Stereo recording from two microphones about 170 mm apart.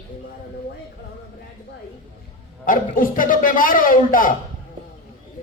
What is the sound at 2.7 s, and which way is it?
Speech, 55° left (ahead or behind).